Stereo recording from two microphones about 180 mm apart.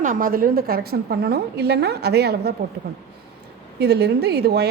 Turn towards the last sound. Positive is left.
turn(degrees=-65)  # may be behind; listen again after turning